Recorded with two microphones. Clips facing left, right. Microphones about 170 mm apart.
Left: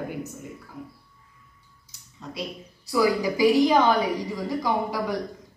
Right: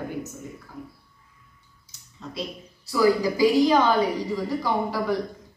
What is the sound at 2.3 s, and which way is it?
A woman's voice, 15° left (ahead or behind).